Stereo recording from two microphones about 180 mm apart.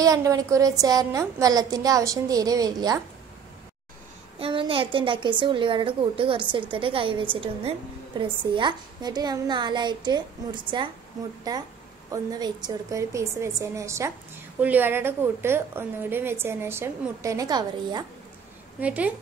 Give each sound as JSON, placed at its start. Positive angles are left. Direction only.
{"t": 0.0, "sound": "a child's voice", "side_deg": -20}
{"t": 4.4, "sound": "a child's voice", "side_deg": -30}
{"t": 18.8, "sound": "a woman's voice", "side_deg": -10}